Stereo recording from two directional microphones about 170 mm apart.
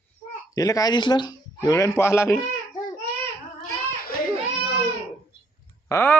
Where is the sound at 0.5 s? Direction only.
20° left (ahead or behind).